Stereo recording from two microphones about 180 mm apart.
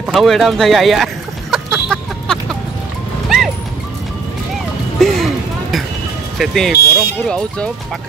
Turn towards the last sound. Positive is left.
turn(degrees=5)  # may be behind; listen again after turning